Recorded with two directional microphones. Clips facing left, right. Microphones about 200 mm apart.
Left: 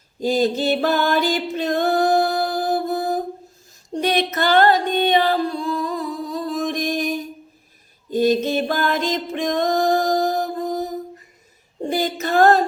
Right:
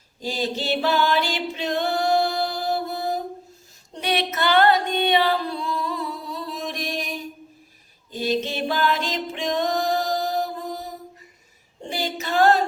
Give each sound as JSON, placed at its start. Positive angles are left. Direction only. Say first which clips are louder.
{"t": 0.2, "sound": "music", "louder": "left 8 dB", "side_deg": 50}
{"t": 11.8, "sound": "a capella", "louder": "left 7 dB", "side_deg": 50}